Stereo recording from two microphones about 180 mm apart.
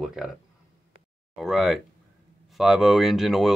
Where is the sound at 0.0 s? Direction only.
5° right (ahead or behind).